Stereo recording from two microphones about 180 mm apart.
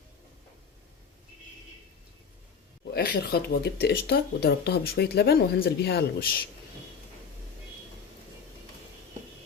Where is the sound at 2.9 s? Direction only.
60° left (ahead or behind).